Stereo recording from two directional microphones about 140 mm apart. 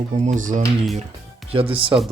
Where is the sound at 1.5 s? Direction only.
40° right (ahead or behind).